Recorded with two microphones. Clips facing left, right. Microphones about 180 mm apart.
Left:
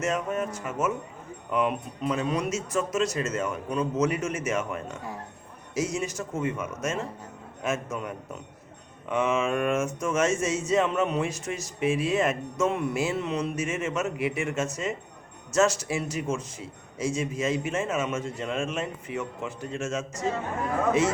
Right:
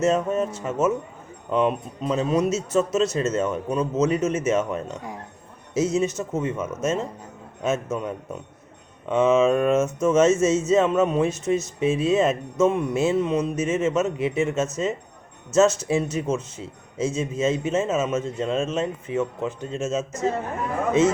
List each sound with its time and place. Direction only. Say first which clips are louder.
0.0 s speech: right 6 dB; 25° right (ahead or behind)